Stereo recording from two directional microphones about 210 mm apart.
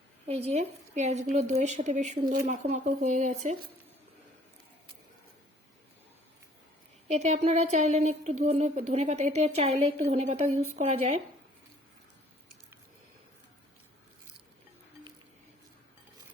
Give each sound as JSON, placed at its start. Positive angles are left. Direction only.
{"t": 0.3, "sound": "a woman's voice", "side_deg": -30}
{"t": 7.1, "sound": "a woman's voice", "side_deg": -30}